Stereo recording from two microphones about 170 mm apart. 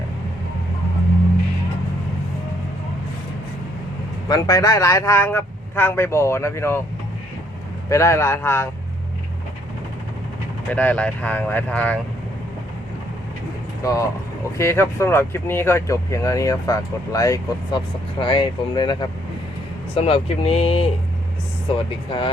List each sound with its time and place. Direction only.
4.3 s speech: 20° left (ahead or behind)
7.9 s speech: 15° left (ahead or behind)
10.7 s speech: 10° left (ahead or behind)
13.8 s speech: 20° left (ahead or behind)